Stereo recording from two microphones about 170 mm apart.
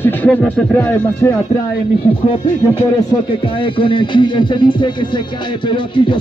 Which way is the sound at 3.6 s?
30° left (ahead or behind).